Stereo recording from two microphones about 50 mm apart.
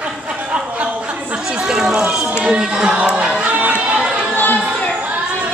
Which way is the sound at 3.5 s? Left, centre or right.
Right.